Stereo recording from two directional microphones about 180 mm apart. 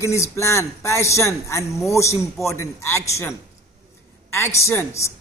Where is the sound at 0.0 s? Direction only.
15° left (ahead or behind).